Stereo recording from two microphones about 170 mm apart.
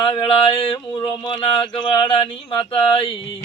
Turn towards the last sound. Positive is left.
turn(degrees=30)  # may be behind; listen again after turning